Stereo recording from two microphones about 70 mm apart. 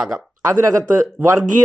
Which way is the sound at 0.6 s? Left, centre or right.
Right.